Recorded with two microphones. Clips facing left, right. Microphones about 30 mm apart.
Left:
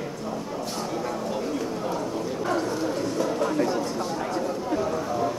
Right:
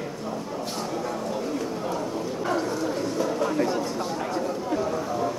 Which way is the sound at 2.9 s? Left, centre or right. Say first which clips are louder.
Even; centre.